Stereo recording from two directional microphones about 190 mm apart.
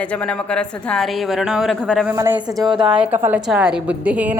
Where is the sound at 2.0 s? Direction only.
10° right (ahead or behind).